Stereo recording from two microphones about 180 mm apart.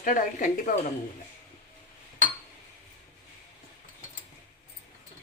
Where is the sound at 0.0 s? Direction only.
45° left (ahead or behind).